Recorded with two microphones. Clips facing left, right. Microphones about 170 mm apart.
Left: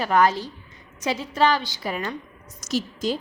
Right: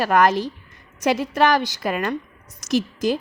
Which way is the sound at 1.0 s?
75° right (ahead or behind).